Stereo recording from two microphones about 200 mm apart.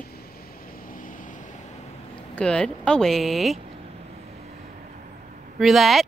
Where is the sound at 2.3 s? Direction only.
5° left (ahead or behind).